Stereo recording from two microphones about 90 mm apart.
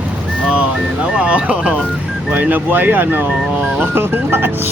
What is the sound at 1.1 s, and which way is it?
Speech, 15° right (ahead or behind).